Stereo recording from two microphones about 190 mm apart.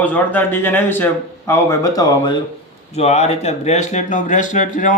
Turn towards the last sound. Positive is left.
turn(degrees=40)  # may be behind; listen again after turning